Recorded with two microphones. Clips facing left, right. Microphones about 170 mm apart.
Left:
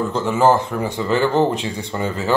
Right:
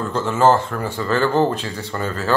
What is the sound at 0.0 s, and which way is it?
Speech, 15° left (ahead or behind).